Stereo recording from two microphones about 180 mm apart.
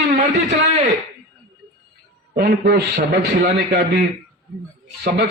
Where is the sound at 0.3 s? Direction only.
65° right (ahead or behind).